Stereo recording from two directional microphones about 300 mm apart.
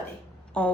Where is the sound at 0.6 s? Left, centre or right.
Centre.